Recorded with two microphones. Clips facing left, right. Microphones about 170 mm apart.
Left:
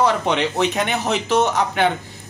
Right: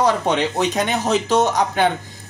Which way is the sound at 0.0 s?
40° right (ahead or behind).